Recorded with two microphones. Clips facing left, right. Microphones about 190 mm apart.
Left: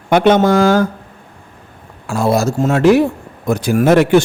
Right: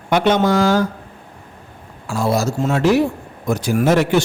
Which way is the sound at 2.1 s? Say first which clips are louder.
Left 4 dB; 55° left (ahead or behind).